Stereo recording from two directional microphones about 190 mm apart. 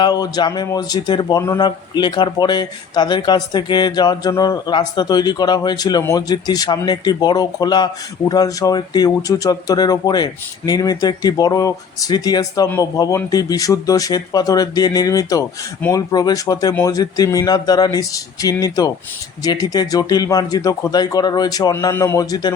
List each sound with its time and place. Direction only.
0.0 s speech: 20° left (ahead or behind)